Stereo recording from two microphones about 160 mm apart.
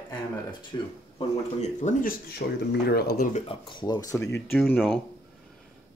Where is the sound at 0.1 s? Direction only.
30° left (ahead or behind); by 3.3 s 85° left.